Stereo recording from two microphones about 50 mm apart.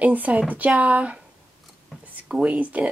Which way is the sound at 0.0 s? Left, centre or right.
Right.